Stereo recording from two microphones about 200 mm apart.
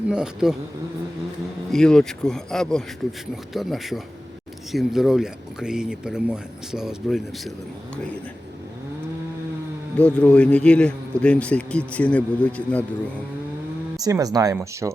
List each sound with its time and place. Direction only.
0.1 s speech: 5° right (ahead or behind)
1.7 s speech: 5° left (ahead or behind)
10.0 s speech: 5° left (ahead or behind)
14.0 s speech: 20° right (ahead or behind)